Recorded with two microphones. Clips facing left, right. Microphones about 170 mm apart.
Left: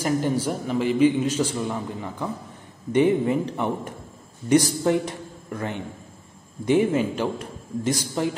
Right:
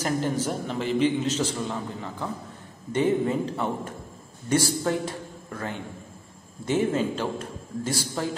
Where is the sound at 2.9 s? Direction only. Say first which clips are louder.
Left 4 dB; 15° left (ahead or behind).